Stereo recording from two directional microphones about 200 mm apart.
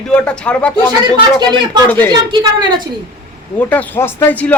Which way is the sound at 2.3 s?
25° right (ahead or behind).